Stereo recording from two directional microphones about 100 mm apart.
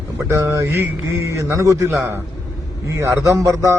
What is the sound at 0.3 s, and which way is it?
A man's voice, 30° right (ahead or behind).